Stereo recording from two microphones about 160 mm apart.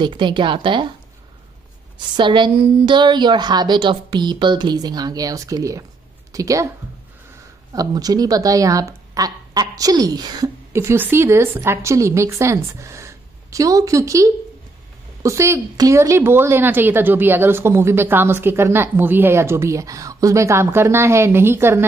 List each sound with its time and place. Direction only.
0.0 s speech: 30° right (ahead or behind)
2.1 s speech: 30° right (ahead or behind)
7.7 s speech: 25° right (ahead or behind)